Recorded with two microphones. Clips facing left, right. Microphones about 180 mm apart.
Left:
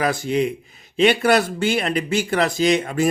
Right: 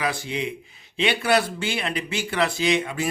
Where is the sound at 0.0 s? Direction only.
45° left (ahead or behind).